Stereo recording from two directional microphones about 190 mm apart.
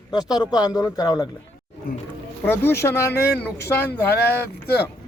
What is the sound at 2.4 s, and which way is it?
Speech, 10° left (ahead or behind).